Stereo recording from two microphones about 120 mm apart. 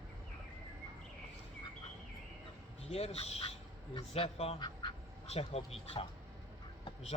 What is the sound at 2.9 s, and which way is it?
A man's voice, 55° left (ahead or behind).